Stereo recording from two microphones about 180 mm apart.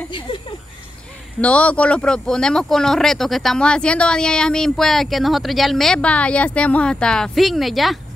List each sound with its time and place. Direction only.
1.4 s speech: 5° left (ahead or behind)